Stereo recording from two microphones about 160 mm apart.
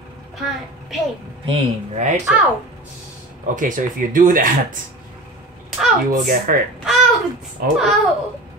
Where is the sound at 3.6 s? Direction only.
55° right (ahead or behind).